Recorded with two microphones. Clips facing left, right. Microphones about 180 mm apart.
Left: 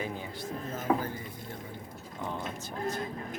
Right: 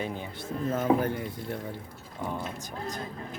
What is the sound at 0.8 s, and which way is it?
Speech, 70° right (ahead or behind).